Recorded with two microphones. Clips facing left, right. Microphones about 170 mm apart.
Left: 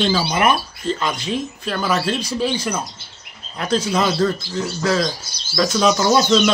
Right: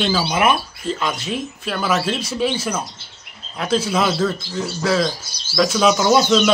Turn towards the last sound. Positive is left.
turn(degrees=-5)  # may be behind; listen again after turning